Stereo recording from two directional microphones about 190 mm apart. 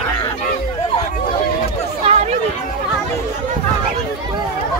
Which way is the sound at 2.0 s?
35° right (ahead or behind).